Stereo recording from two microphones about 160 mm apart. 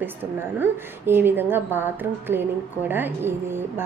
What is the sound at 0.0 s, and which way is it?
A woman's voice, 10° right (ahead or behind).